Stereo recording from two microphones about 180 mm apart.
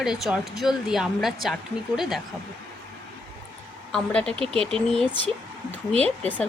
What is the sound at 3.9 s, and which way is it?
Speech, 5° left (ahead or behind).